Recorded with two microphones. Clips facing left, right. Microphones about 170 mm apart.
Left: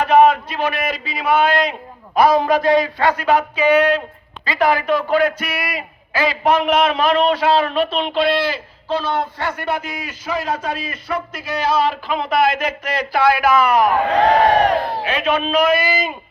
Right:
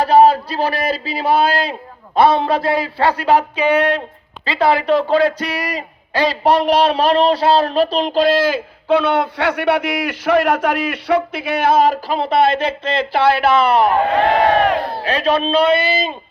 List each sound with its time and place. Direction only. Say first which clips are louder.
0.0 s a man's voice: right 2 dB; 35° right (ahead or behind)
15.0 s speech: right 3 dB; 35° right (ahead or behind)